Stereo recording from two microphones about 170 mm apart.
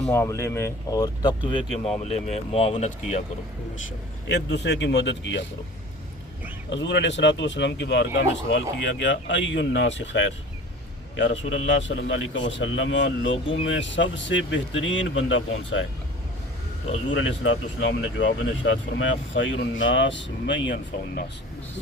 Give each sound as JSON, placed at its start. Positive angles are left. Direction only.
{"t": 0.1, "sound": "speech", "side_deg": 15}
{"t": 2.0, "sound": "speech", "side_deg": 40}
{"t": 4.3, "sound": "speech", "side_deg": 90}
{"t": 6.7, "sound": "speech", "side_deg": 90}
{"t": 17.1, "sound": "speech", "side_deg": 90}